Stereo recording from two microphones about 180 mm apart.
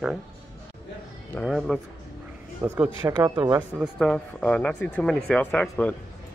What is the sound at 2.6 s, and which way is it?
Speech, 10° right (ahead or behind).